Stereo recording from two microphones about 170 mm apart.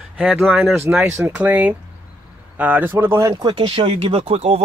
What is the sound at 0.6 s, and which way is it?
Speech, 15° right (ahead or behind).